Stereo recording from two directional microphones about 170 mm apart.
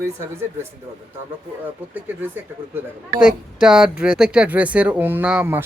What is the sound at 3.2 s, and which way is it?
Speech, 5° right (ahead or behind).